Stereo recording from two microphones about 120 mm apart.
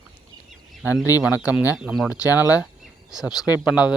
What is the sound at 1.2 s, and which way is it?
A man's voice, 10° right (ahead or behind).